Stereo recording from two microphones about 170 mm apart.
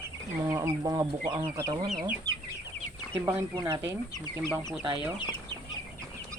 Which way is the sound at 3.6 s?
15° right (ahead or behind).